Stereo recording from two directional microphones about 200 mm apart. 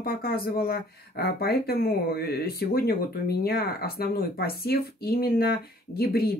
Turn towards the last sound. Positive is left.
turn(degrees=50)  # may be behind; listen again after turning